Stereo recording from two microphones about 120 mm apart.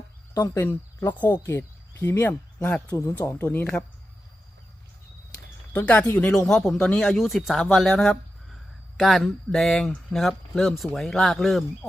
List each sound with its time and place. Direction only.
0.3 s speech: 20° left (ahead or behind)
2.9 s speech: 25° left (ahead or behind)
3.2 s speech: 15° left (ahead or behind)
5.3 s speech: 10° left (ahead or behind)